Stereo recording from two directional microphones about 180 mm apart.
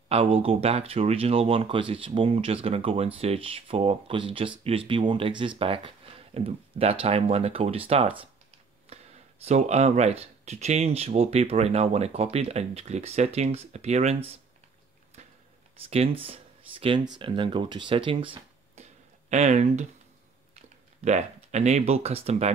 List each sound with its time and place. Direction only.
0.1 s speech: 35° right (ahead or behind)
15.2 s a sound: 40° right (ahead or behind)
15.9 s speech: 35° right (ahead or behind)
21.0 s speech: 40° right (ahead or behind)